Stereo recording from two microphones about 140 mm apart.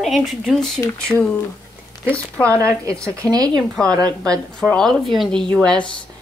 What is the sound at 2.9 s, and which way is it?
Speech, 10° left (ahead or behind).